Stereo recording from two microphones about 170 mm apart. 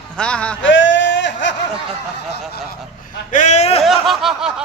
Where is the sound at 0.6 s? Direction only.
90° left.